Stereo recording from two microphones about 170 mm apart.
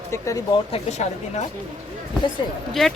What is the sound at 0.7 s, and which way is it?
Speech, 40° left (ahead or behind).